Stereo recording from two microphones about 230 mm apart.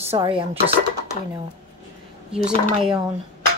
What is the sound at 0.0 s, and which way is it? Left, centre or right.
Speech, right.